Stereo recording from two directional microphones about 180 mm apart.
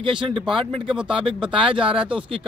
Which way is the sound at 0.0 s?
30° right (ahead or behind).